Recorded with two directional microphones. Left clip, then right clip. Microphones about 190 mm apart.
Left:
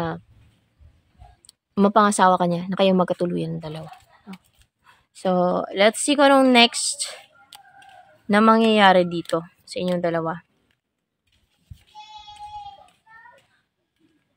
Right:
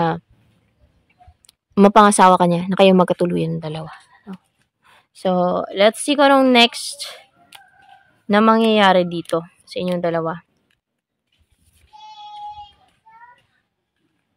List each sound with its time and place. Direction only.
1.4 s a woman's voice: 35° right (ahead or behind); by 7.2 s 20° right (ahead or behind)
8.3 s a woman's voice: 20° right (ahead or behind)